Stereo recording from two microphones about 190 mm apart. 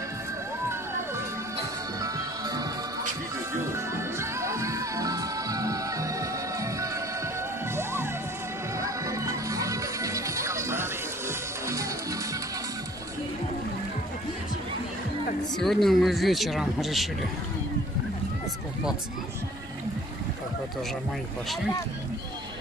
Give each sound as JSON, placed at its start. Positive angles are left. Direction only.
{"t": 2.0, "sound": "music", "side_deg": -20}
{"t": 15.6, "sound": "speech", "side_deg": 0}